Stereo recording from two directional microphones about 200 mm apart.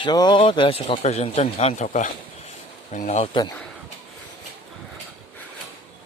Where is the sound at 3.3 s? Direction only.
20° left (ahead or behind).